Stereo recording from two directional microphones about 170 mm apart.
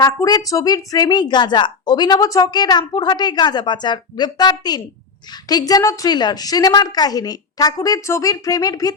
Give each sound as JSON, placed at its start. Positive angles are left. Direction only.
{"t": 0.0, "sound": "speech", "side_deg": 20}